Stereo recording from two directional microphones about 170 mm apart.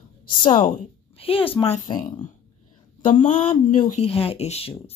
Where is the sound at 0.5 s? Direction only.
55° left (ahead or behind).